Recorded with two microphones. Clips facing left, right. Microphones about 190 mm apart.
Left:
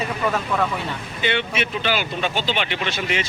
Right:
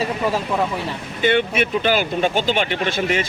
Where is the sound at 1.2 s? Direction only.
50° right (ahead or behind).